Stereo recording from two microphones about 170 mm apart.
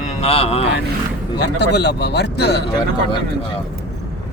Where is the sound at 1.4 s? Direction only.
85° left.